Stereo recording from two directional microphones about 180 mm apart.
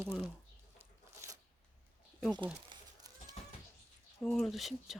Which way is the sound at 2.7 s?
20° right (ahead or behind).